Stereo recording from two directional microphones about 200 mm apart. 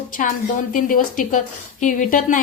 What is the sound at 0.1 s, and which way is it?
A woman's voice, 40° left (ahead or behind).